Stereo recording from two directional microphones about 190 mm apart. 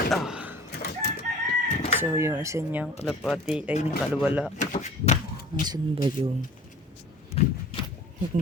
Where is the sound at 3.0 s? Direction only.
Centre (ahead or behind).